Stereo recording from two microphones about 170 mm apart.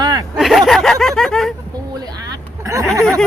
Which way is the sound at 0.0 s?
25° right (ahead or behind).